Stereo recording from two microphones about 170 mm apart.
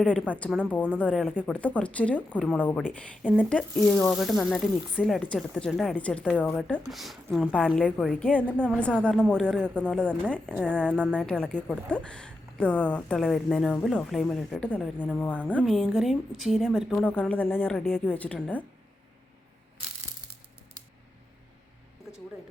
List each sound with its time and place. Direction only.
0.0 s speech: 5° left (ahead or behind)